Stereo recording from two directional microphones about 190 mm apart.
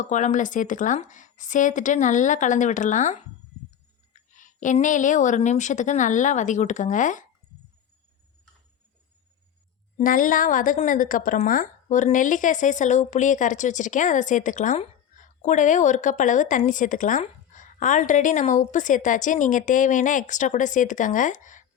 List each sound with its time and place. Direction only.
0.0 s a woman's voice: 40° left (ahead or behind)
4.3 s a woman's voice: 40° left (ahead or behind)
10.0 s a woman's voice: 45° left (ahead or behind)